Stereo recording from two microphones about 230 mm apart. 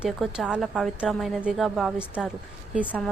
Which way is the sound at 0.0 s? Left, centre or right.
Centre.